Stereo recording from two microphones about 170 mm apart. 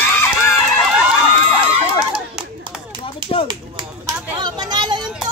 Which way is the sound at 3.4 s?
25° right (ahead or behind).